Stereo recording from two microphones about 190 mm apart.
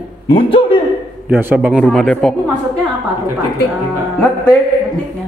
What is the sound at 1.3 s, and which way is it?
A man's voice, 5° right (ahead or behind).